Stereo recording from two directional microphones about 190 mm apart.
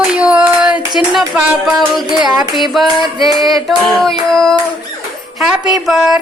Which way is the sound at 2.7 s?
Centre (ahead or behind).